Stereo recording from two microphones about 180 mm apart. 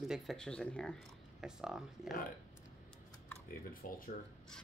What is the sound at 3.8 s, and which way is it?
Speech, 50° left (ahead or behind).